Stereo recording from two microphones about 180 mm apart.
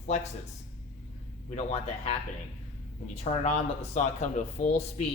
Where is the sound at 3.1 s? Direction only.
35° left (ahead or behind).